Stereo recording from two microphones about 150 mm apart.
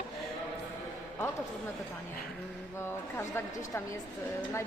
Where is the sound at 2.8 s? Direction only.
15° left (ahead or behind).